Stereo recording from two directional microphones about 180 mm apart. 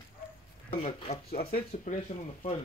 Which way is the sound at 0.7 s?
35° left (ahead or behind).